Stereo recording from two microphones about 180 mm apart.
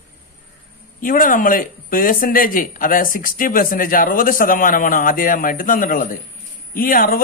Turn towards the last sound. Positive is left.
turn(degrees=50)  # may be behind; listen again after turning